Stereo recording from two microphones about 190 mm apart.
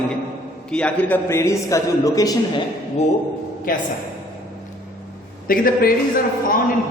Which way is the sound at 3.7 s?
50° left (ahead or behind).